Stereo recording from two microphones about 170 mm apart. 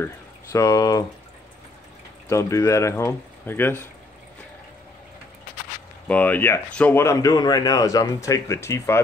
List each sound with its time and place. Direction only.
0.5 s speech: 20° left (ahead or behind)
2.2 s speech: 15° left (ahead or behind)
6.0 s speech: 10° left (ahead or behind)